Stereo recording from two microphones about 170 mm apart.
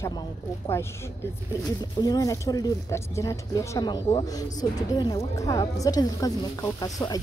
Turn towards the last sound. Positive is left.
turn(degrees=20)  # may be behind; listen again after turning